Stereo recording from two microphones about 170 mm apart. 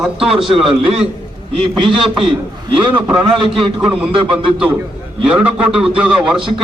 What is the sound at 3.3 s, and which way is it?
Speech, 30° right (ahead or behind).